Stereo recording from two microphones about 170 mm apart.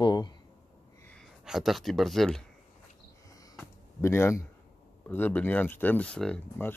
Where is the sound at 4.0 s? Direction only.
15° left (ahead or behind).